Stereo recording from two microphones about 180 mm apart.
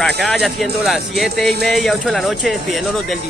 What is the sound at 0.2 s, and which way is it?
Speech, centre (ahead or behind).